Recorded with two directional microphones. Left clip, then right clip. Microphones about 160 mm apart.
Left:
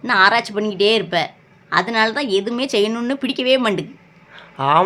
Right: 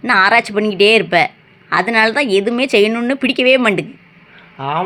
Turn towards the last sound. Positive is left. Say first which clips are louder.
# left 5 dB
turn(degrees=30)  # may be behind; listen again after turning